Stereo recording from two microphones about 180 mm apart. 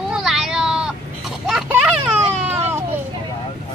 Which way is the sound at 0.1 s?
Centre (ahead or behind).